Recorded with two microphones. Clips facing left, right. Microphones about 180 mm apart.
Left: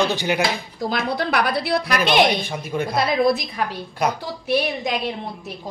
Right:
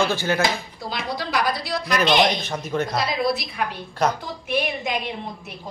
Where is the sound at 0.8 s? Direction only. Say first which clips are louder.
Left 6 dB; 55° left (ahead or behind).